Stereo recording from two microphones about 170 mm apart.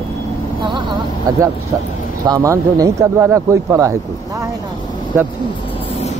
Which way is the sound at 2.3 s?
20° right (ahead or behind).